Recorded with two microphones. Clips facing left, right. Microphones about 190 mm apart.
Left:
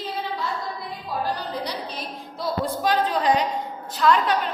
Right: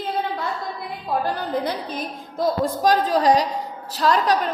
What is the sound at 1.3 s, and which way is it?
A woman's voice, 50° right (ahead or behind).